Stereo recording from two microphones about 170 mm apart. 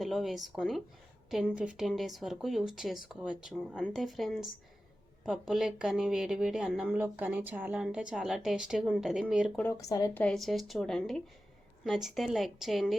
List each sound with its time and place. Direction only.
0.0 s speech: centre (ahead or behind)
9.7 s a woman's voice: 20° left (ahead or behind)
10.2 s speech: 5° left (ahead or behind)